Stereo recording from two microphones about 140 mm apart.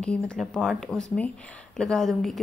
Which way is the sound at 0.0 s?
5° left (ahead or behind).